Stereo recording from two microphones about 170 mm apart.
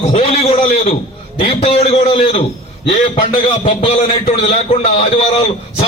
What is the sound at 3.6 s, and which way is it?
A man's voice, 35° left (ahead or behind).